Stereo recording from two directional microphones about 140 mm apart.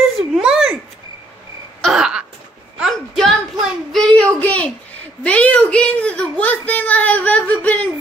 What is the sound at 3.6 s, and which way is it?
Child singing, centre (ahead or behind).